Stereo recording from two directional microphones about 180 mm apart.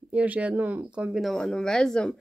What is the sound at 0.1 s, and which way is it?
Speech, 10° right (ahead or behind).